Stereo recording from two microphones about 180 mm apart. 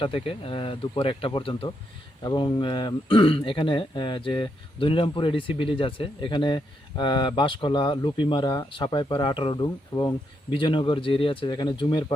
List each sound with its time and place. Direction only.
0.0 s speech: 30° left (ahead or behind)